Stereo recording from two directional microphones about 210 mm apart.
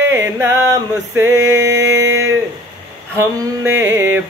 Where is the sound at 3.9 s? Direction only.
10° right (ahead or behind).